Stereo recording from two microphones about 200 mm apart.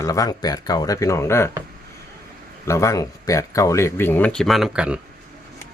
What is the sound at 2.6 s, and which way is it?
A man's voice, 15° left (ahead or behind).